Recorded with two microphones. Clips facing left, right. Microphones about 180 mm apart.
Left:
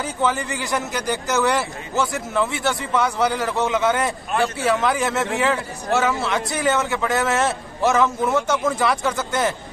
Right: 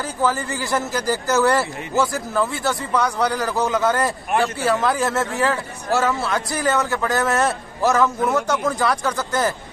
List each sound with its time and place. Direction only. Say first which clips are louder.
0.0 s speech: even; centre (ahead or behind)
4.3 s speech: right 1 dB; 20° right (ahead or behind)
4.6 s speech: left 1 dB; centre (ahead or behind)